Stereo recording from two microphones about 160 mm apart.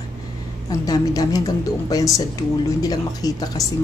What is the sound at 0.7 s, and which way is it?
Speech, 25° left (ahead or behind).